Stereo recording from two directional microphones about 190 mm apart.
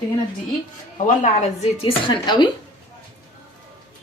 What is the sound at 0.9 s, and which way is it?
Speech, 40° left (ahead or behind).